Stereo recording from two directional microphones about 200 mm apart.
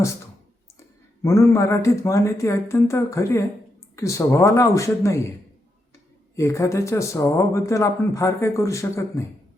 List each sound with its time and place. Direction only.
1.2 s speech: 15° left (ahead or behind)
6.3 s speech: 15° left (ahead or behind)